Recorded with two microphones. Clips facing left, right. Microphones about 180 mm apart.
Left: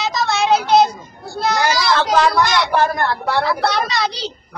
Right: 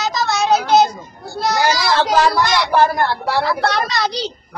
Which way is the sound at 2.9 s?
Centre (ahead or behind).